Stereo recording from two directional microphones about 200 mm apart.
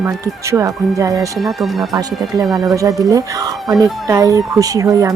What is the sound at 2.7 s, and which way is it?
Speech, 15° right (ahead or behind).